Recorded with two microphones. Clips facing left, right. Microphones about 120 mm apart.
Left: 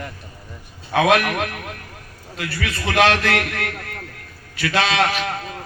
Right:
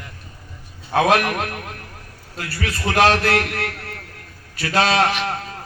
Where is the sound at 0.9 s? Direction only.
35° right (ahead or behind).